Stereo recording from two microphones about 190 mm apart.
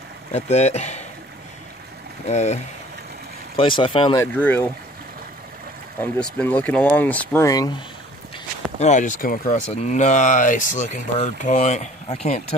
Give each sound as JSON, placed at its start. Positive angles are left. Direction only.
{"t": 0.3, "sound": "speech", "side_deg": 35}
{"t": 2.2, "sound": "speech", "side_deg": 35}
{"t": 4.2, "sound": "speech", "side_deg": 10}
{"t": 5.9, "sound": "speech", "side_deg": 5}
{"t": 8.7, "sound": "speech", "side_deg": 40}